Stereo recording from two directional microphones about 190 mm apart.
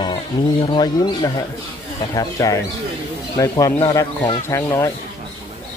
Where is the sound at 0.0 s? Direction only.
25° left (ahead or behind).